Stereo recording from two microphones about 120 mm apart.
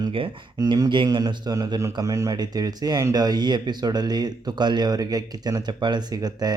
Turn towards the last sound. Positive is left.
turn(degrees=-35)  # may be behind; listen again after turning